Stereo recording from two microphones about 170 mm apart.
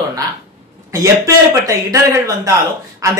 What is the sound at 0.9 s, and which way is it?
Speech, 20° right (ahead or behind).